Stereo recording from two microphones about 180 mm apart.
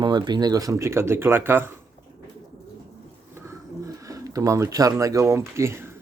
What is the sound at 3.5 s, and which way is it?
Speech, 20° right (ahead or behind).